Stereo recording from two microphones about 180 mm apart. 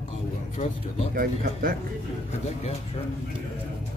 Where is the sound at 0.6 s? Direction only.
35° left (ahead or behind).